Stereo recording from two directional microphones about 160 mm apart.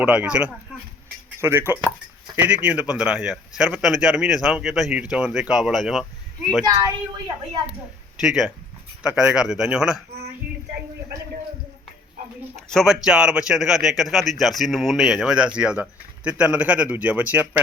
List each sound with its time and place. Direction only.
0.0 s a man's voice: 10° right (ahead or behind)
6.7 s a woman's voice: 20° right (ahead or behind)
8.2 s a man's voice: 5° right (ahead or behind)
12.5 s a man's voice: centre (ahead or behind)